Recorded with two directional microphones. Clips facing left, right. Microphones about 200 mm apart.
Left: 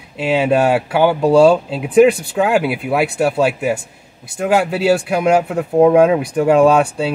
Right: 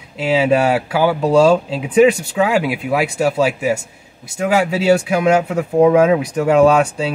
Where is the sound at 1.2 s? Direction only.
10° left (ahead or behind).